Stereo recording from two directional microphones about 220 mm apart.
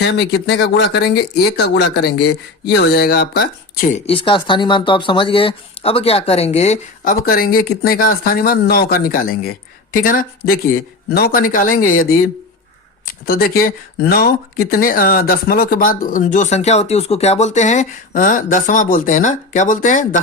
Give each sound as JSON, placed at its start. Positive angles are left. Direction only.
{"t": 0.0, "sound": "speech", "side_deg": 50}